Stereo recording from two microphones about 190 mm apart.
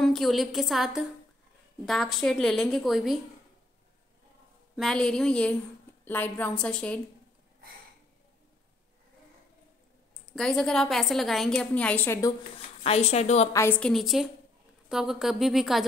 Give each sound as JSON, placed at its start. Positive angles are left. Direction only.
{"t": 0.0, "sound": "a woman's voice", "side_deg": 0}
{"t": 4.7, "sound": "a woman's voice", "side_deg": 0}
{"t": 10.2, "sound": "a woman's voice", "side_deg": 5}
{"t": 12.5, "sound": "a woman's voice", "side_deg": 30}
{"t": 13.5, "sound": "a woman's voice", "side_deg": 15}